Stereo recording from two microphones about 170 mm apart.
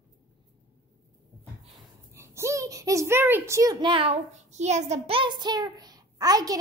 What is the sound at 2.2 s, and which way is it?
Female singing, 15° right (ahead or behind).